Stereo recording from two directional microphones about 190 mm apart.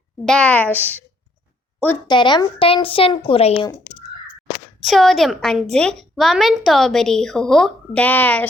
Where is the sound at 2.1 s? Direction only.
25° left (ahead or behind).